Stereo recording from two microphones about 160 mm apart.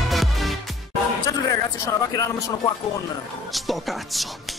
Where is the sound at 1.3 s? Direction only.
20° left (ahead or behind).